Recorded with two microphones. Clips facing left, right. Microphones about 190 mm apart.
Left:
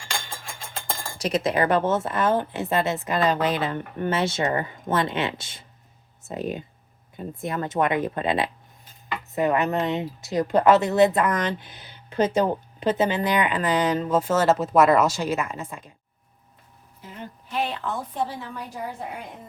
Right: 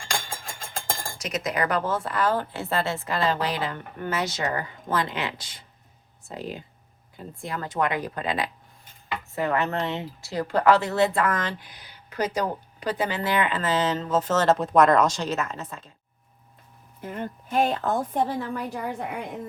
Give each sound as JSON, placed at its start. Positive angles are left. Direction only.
{"t": 1.2, "sound": "speech", "side_deg": 30}
{"t": 17.0, "sound": "a woman's voice", "side_deg": -55}